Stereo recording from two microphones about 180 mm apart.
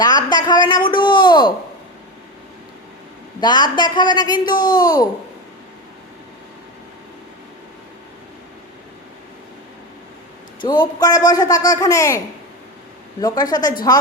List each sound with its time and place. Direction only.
0.3 s a child's voice: 25° left (ahead or behind)
3.4 s a child's voice: 25° left (ahead or behind)
10.6 s a child's voice: 25° left (ahead or behind)
13.2 s a child's voice: 20° left (ahead or behind)